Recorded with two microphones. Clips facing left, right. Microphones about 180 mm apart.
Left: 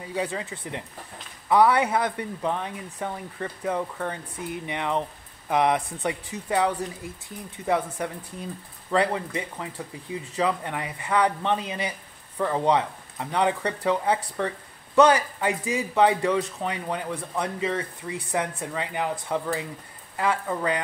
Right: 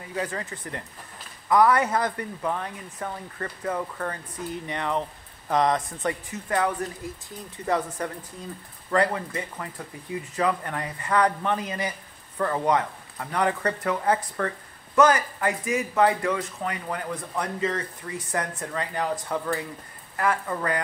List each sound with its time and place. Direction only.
0.1 s speech: 15° left (ahead or behind)